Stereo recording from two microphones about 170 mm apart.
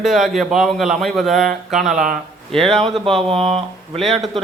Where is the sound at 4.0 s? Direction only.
Centre (ahead or behind).